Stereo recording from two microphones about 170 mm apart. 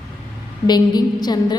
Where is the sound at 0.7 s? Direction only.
25° left (ahead or behind).